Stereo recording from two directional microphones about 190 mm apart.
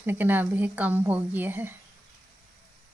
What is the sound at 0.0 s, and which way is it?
A woman's voice, 10° right (ahead or behind).